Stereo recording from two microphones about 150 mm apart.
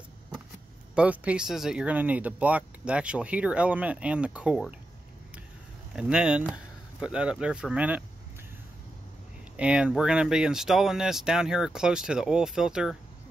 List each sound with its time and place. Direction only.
0.9 s speech: 10° right (ahead or behind)
5.9 s speech: 5° right (ahead or behind)
9.6 s speech: 5° right (ahead or behind)